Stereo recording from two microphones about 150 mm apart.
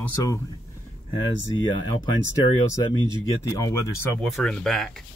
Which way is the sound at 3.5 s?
20° left (ahead or behind).